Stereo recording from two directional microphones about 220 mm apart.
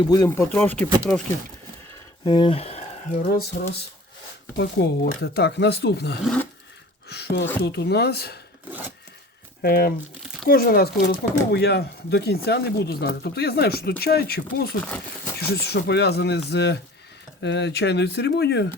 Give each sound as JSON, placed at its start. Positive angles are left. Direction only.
{"t": 0.1, "sound": "speech", "side_deg": 15}
{"t": 2.2, "sound": "speech", "side_deg": 20}
{"t": 3.6, "sound": "speech", "side_deg": 40}
{"t": 4.5, "sound": "speech", "side_deg": 50}
{"t": 6.2, "sound": "filing", "side_deg": 5}
{"t": 7.1, "sound": "speech", "side_deg": 50}
{"t": 9.6, "sound": "speech", "side_deg": 45}